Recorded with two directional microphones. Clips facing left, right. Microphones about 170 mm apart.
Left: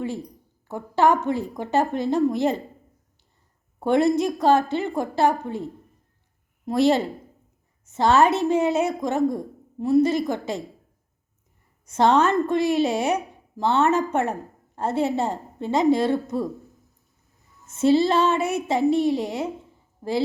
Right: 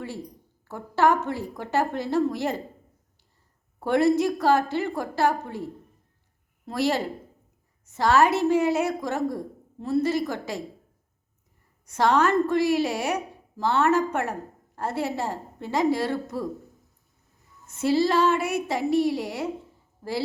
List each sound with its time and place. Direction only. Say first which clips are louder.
0.7 s a woman's voice: left 2 dB; 20° left (ahead or behind)
3.8 s a woman's voice: left 1 dB; 20° left (ahead or behind)
6.7 s a woman's voice: left 6 dB; 20° left (ahead or behind)
11.9 s a woman's voice: left 3 dB; 25° left (ahead or behind)
17.7 s a woman's voice: left 3 dB; 25° left (ahead or behind)